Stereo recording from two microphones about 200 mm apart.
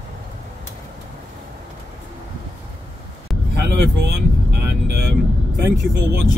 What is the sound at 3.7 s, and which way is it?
Vehicle, 55° right (ahead or behind).